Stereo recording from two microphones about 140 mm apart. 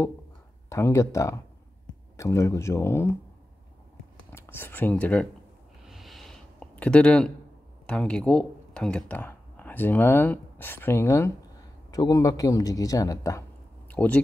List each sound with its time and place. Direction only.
0.7 s speech: 20° left (ahead or behind)
4.3 s speech: 15° left (ahead or behind)
5.9 s a sound: centre (ahead or behind)
7.8 s speech: 5° left (ahead or behind); by 13.4 s 25° left (ahead or behind)
13.8 s speech: 10° left (ahead or behind)